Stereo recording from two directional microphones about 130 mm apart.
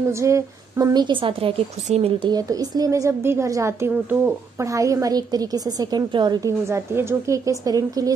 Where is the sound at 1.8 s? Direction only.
55° right (ahead or behind).